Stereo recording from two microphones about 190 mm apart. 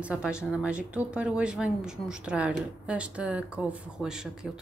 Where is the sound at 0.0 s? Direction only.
5° right (ahead or behind).